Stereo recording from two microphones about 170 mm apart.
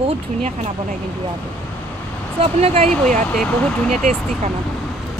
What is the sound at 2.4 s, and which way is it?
Speech, 35° right (ahead or behind).